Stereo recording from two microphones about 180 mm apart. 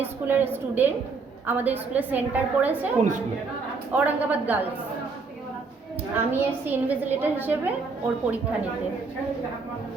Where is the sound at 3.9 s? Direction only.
10° right (ahead or behind).